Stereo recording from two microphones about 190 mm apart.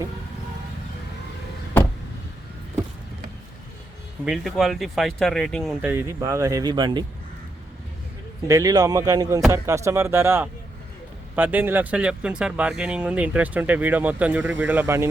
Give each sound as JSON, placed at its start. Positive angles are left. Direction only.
{"t": 4.3, "sound": "speech", "side_deg": 0}
{"t": 5.8, "sound": "speech", "side_deg": -10}
{"t": 8.4, "sound": "speech", "side_deg": -15}